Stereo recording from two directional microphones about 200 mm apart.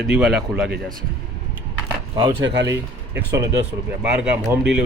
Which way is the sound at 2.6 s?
15° right (ahead or behind).